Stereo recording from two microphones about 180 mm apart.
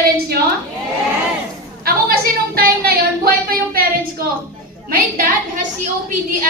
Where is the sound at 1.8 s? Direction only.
55° right (ahead or behind).